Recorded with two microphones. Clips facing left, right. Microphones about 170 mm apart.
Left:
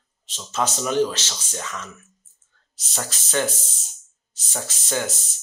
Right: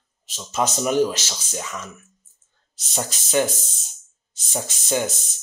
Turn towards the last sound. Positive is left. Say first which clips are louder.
# right 3 dB
turn(degrees=-15)  # may be behind; listen again after turning